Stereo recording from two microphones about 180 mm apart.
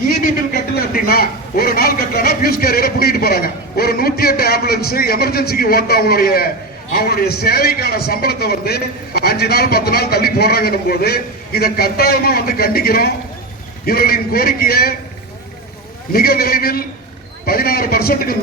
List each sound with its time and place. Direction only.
0.1 s a sound: 55° left (ahead or behind)
6.9 s a man's voice: 55° left (ahead or behind)
16.1 s a man's voice: 55° left (ahead or behind)